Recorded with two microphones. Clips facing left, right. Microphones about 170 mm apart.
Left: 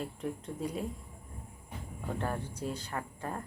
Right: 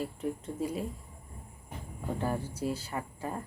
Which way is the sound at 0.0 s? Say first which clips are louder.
Right 3 dB; 5° right (ahead or behind).